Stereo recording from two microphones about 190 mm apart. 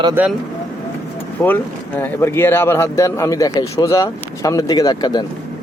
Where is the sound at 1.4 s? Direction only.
10° left (ahead or behind).